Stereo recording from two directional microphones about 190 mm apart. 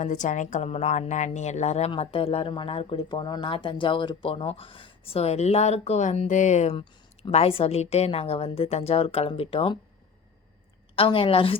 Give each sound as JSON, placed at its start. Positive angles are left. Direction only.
{"t": 0.0, "sound": "a woman's voice", "side_deg": 40}
{"t": 10.9, "sound": "a woman's voice", "side_deg": 30}